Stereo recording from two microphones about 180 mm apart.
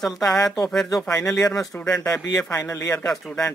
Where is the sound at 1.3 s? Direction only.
20° left (ahead or behind).